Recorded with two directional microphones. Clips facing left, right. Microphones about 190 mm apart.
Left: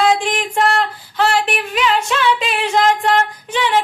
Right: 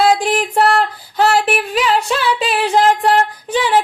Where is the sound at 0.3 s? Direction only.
35° right (ahead or behind).